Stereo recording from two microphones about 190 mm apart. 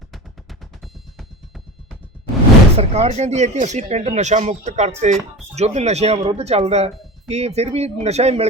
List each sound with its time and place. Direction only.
2.7 s speech: 35° right (ahead or behind)